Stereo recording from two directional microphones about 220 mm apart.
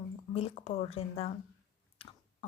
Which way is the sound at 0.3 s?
25° left (ahead or behind).